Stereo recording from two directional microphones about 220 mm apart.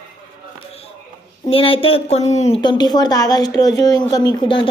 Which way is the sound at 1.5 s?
25° left (ahead or behind).